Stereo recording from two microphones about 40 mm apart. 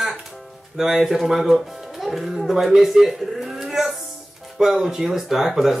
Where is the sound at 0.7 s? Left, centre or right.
Centre.